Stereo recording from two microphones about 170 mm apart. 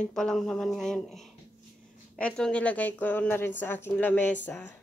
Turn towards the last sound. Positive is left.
turn(degrees=10)  # may be behind; listen again after turning